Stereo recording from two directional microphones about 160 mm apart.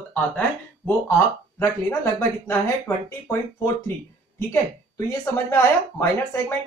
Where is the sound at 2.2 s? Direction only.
15° left (ahead or behind).